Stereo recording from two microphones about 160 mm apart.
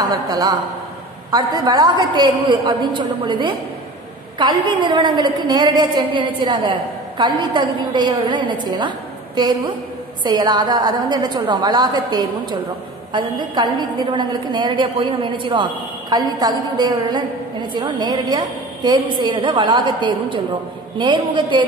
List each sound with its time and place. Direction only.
0.0 s a woman's voice: 25° right (ahead or behind)